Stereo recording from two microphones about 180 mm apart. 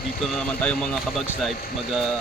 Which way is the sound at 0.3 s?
5° left (ahead or behind).